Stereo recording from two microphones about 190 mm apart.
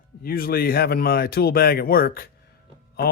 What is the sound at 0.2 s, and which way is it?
Speech, 50° left (ahead or behind).